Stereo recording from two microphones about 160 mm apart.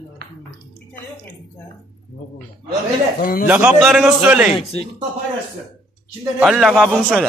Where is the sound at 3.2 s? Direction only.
65° left (ahead or behind).